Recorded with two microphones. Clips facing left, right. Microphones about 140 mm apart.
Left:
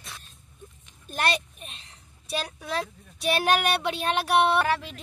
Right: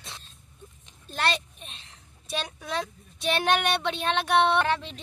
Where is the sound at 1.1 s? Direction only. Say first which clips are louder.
Left 1 dB; 15° left (ahead or behind).